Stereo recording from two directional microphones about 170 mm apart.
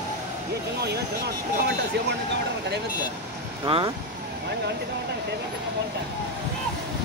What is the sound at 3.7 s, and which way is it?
Speech, 30° right (ahead or behind).